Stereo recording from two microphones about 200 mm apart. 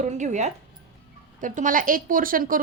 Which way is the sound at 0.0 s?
35° right (ahead or behind).